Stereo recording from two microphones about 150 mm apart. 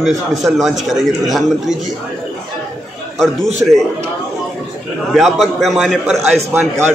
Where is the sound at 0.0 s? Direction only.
Centre (ahead or behind).